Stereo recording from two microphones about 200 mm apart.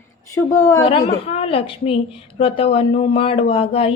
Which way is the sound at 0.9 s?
30° left (ahead or behind).